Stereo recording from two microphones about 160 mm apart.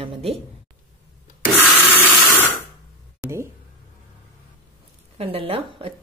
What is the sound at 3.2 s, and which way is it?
Speech, 15° right (ahead or behind).